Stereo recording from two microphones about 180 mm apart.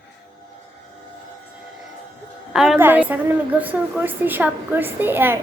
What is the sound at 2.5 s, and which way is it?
A woman's voice, 5° right (ahead or behind).